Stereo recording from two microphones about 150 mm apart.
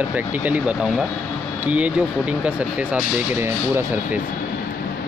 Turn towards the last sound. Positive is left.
turn(degrees=-15)  # may be behind; listen again after turning